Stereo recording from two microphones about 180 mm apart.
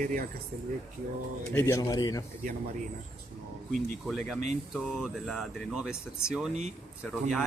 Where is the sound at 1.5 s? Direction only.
15° left (ahead or behind).